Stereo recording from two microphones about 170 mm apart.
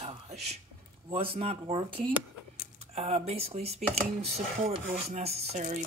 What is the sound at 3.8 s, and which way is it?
Speech, 5° left (ahead or behind).